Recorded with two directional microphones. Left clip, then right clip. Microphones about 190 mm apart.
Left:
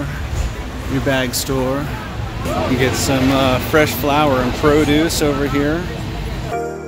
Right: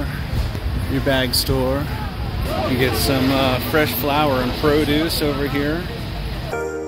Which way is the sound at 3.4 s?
15° left (ahead or behind).